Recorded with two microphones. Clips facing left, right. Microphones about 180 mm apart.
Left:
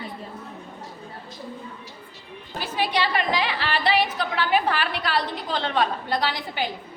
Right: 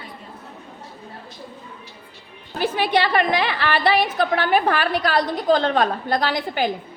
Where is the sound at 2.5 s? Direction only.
60° right (ahead or behind).